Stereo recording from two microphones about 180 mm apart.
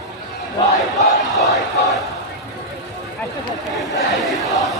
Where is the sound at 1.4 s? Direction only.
Centre (ahead or behind).